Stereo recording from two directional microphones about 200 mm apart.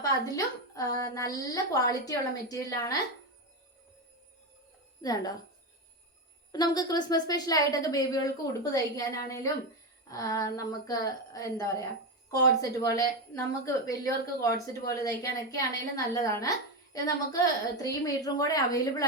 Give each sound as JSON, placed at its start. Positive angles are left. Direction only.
{"t": 0.0, "sound": "a woman's voice", "side_deg": 15}
{"t": 5.0, "sound": "speech", "side_deg": 20}
{"t": 6.5, "sound": "a woman's voice", "side_deg": 20}
{"t": 13.0, "sound": "a woman's voice", "side_deg": 15}